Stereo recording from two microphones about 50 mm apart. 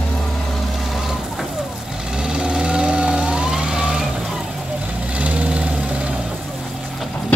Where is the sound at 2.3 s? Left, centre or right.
Centre.